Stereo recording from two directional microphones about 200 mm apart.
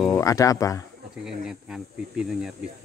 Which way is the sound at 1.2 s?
5° right (ahead or behind).